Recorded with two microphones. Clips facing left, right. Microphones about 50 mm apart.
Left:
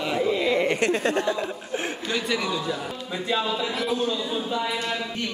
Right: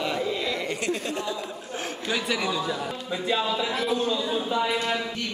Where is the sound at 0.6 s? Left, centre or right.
Left.